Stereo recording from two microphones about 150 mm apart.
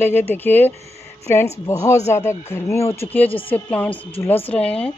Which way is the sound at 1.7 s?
20° left (ahead or behind).